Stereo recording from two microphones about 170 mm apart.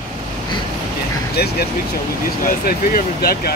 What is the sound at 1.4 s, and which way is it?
Speech, 70° left (ahead or behind).